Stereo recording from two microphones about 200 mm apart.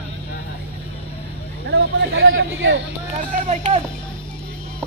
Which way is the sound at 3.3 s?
35° right (ahead or behind).